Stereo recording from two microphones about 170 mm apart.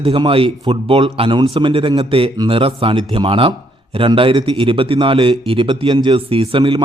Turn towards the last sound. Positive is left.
turn(degrees=-30)  # may be behind; listen again after turning